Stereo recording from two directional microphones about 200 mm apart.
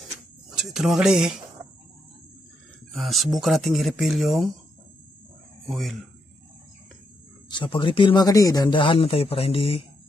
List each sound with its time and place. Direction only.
0.5 s speech: centre (ahead or behind)
2.9 s speech: centre (ahead or behind)
5.7 s speech: centre (ahead or behind)
7.4 s speech: 25° left (ahead or behind)